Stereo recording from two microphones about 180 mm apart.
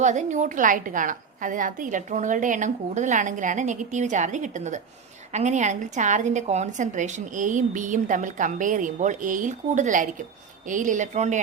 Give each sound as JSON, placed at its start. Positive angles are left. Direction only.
{"t": 0.0, "sound": "a woman's voice", "side_deg": -40}